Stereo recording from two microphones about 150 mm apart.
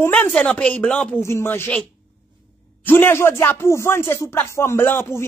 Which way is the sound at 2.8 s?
15° left (ahead or behind).